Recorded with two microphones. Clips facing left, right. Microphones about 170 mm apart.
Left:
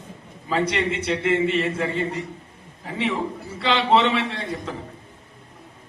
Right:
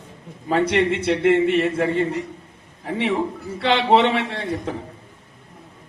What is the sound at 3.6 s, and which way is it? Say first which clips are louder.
A man's voice: right 2 dB; 60° right (ahead or behind).